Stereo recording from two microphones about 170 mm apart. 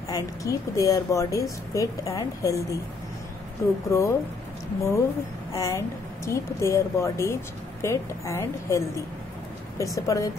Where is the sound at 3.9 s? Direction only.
15° left (ahead or behind).